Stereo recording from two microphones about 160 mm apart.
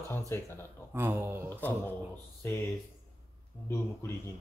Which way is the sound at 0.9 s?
15° right (ahead or behind).